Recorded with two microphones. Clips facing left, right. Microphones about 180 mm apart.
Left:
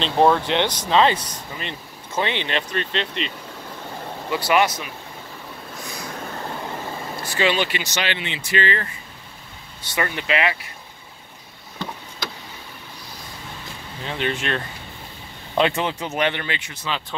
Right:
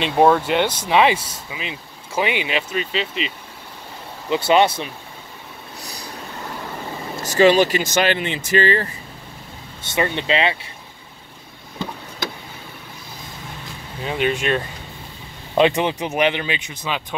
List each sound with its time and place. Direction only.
0.0 s speech: 10° right (ahead or behind)
4.3 s speech: 25° right (ahead or behind)
7.2 s speech: 45° right (ahead or behind)
9.8 s speech: 25° right (ahead or behind)
14.0 s speech: 15° right (ahead or behind)